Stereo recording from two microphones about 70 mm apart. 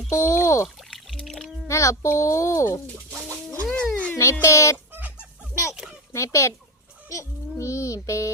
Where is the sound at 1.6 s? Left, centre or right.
Left.